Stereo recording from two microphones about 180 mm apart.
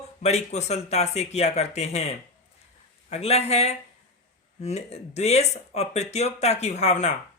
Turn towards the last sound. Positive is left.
turn(degrees=40)  # may be behind; listen again after turning